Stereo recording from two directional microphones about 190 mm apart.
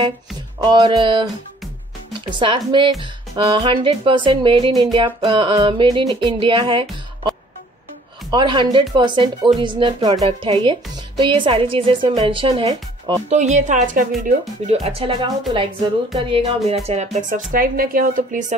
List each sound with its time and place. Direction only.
0.6 s speech: 25° right (ahead or behind)
13.3 s music: 40° right (ahead or behind)
14.7 s music: 30° right (ahead or behind)
16.2 s music: 30° right (ahead or behind)
17.5 s speech: 50° right (ahead or behind)